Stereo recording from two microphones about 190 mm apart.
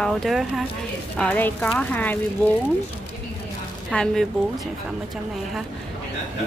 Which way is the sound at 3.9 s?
5° left (ahead or behind).